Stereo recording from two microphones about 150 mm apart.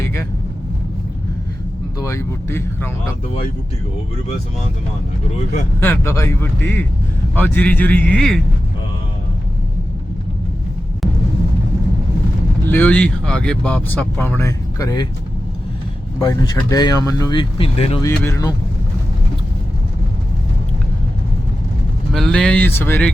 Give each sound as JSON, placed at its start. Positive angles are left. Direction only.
{"t": 2.0, "sound": "speech", "side_deg": 20}
{"t": 5.8, "sound": "speech", "side_deg": 15}
{"t": 12.7, "sound": "speech", "side_deg": 10}
{"t": 16.1, "sound": "speech", "side_deg": 25}
{"t": 17.6, "sound": "speech", "side_deg": 40}
{"t": 18.2, "sound": "speech", "side_deg": 20}
{"t": 22.1, "sound": "speech", "side_deg": 5}